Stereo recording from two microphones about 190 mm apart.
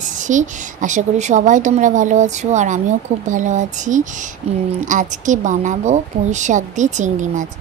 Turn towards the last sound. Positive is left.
turn(degrees=-40)  # may be behind; listen again after turning